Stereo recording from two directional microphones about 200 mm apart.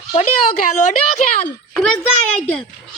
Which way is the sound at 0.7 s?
40° left (ahead or behind).